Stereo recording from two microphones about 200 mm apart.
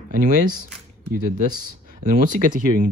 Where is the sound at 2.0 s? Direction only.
40° right (ahead or behind).